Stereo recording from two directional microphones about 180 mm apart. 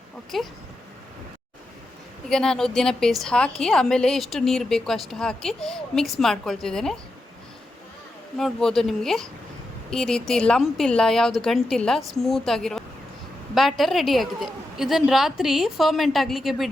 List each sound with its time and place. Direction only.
0.3 s a woman's voice: centre (ahead or behind)
2.3 s a woman's voice: 5° left (ahead or behind)
8.4 s a woman's voice: centre (ahead or behind)